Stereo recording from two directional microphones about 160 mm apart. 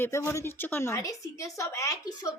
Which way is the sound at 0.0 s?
15° left (ahead or behind).